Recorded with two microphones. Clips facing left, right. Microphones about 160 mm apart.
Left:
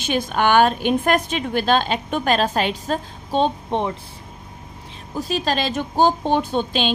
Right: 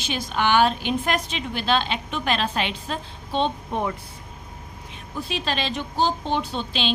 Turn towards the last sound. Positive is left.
turn(degrees=50)  # may be behind; listen again after turning